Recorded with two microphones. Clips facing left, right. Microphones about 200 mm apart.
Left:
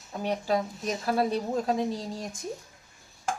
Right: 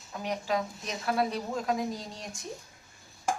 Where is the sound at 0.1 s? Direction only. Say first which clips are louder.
Left 4 dB; 30° left (ahead or behind).